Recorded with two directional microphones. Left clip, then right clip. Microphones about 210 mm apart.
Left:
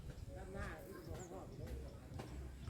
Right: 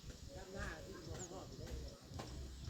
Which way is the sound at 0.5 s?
45° right (ahead or behind).